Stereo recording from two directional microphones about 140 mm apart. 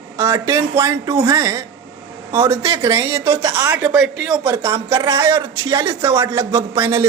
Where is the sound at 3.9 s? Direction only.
5° right (ahead or behind).